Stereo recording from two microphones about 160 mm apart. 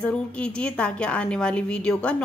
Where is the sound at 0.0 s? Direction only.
5° left (ahead or behind).